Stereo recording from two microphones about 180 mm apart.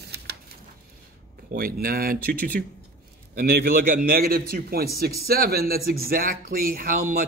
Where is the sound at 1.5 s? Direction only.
55° right (ahead or behind).